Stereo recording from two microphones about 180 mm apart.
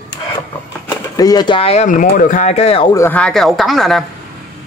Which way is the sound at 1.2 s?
20° left (ahead or behind).